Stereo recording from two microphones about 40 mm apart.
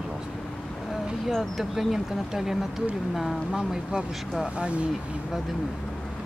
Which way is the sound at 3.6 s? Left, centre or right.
Centre.